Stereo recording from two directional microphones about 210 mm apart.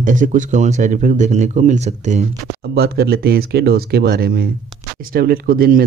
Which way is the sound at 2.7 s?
50° right (ahead or behind).